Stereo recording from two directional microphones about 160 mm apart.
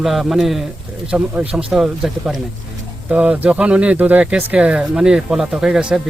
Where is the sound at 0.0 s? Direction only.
Centre (ahead or behind).